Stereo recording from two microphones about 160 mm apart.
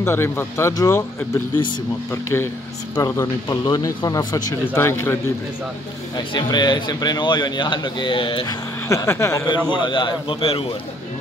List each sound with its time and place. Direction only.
0.0 s speech: 15° left (ahead or behind)
6.1 s speech: 25° left (ahead or behind)
8.8 s speech: 15° left (ahead or behind)
9.7 s a man's voice: 30° left (ahead or behind)